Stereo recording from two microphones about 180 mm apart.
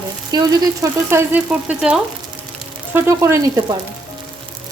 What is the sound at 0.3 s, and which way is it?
Frying, 20° right (ahead or behind).